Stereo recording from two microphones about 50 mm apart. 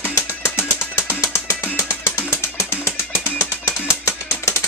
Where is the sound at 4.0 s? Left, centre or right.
Left.